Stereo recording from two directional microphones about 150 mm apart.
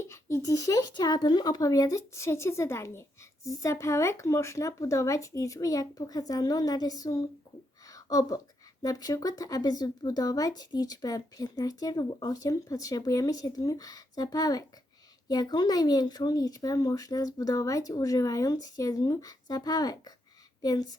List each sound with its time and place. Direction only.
0.0 s speech: 20° left (ahead or behind)
7.9 s a sound: 25° left (ahead or behind)
8.8 s speech: 25° left (ahead or behind)